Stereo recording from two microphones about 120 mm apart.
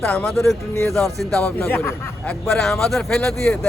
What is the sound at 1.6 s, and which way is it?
Speech, 20° left (ahead or behind).